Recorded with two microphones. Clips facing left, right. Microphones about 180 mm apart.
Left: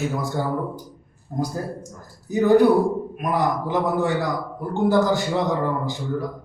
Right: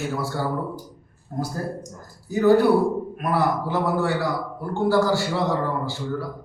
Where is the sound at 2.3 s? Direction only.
20° left (ahead or behind).